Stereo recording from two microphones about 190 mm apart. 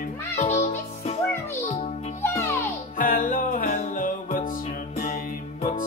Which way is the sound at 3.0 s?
45° left (ahead or behind).